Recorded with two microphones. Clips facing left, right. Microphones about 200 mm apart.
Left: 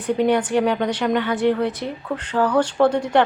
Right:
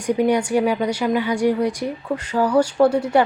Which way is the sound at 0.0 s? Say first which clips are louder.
Even; 10° right (ahead or behind).